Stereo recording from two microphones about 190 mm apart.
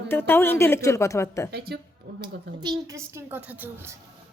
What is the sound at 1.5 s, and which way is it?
Speech, 60° right (ahead or behind).